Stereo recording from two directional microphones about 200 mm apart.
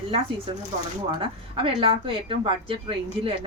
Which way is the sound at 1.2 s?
25° right (ahead or behind).